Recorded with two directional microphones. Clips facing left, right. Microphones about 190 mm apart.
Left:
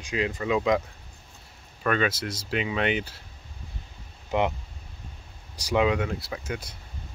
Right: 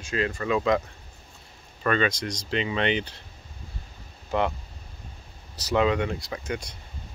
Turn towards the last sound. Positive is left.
turn(degrees=5)  # may be behind; listen again after turning